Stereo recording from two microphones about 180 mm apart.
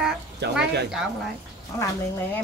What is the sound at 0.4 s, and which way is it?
Speech, 70° right (ahead or behind).